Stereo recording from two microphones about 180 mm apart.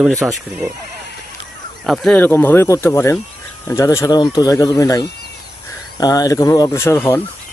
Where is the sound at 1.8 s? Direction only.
Centre (ahead or behind).